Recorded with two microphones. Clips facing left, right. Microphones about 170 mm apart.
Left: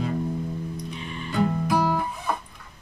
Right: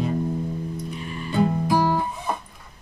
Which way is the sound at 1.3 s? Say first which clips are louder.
Right 2 dB; 20° right (ahead or behind).